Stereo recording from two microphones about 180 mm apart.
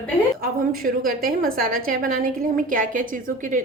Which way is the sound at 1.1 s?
55° right (ahead or behind).